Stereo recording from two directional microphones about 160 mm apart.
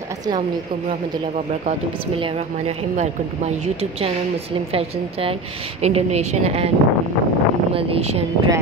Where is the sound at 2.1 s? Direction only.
35° right (ahead or behind).